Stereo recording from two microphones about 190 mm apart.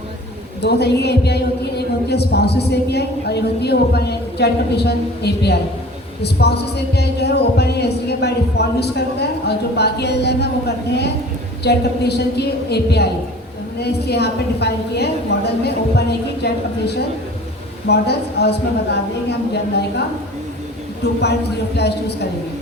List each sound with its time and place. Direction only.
0.6 s a woman's voice: 60° left (ahead or behind)
11.6 s a woman's voice: 60° left (ahead or behind)
21.8 s a woman's voice: 60° left (ahead or behind)